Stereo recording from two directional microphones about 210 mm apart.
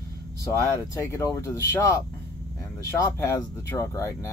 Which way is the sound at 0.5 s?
15° left (ahead or behind).